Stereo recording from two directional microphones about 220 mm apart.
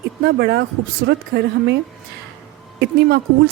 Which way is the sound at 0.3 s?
45° right (ahead or behind).